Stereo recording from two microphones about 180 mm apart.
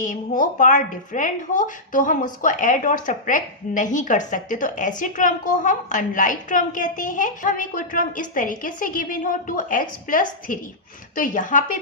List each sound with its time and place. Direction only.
0.0 s a woman's voice: 45° left (ahead or behind)